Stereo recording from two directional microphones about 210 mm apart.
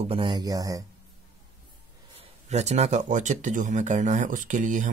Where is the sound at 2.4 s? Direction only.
30° right (ahead or behind).